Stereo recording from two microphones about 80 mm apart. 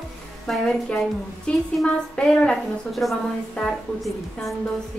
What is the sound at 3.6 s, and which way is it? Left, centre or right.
Speech, centre.